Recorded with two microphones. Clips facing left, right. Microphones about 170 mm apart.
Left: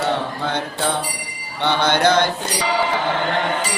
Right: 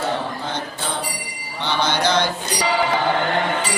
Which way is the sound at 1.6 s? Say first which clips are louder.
Left 4 dB; 55° left (ahead or behind).